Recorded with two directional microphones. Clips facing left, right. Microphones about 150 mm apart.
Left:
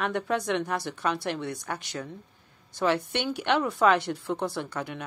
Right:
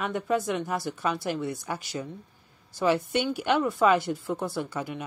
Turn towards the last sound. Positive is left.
turn(degrees=0)  # may be behind; listen again after turning